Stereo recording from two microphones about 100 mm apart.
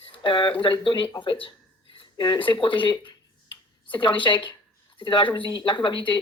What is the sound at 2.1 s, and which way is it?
Speech, 45° left (ahead or behind).